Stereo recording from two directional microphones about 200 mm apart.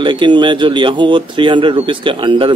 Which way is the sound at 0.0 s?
25° right (ahead or behind).